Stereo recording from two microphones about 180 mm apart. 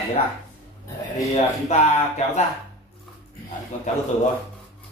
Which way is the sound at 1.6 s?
40° left (ahead or behind).